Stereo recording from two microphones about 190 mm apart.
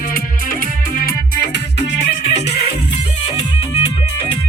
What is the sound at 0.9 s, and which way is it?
Music, 50° left (ahead or behind).